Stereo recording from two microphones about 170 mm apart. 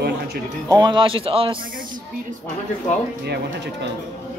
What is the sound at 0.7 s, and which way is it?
Speech, 25° right (ahead or behind).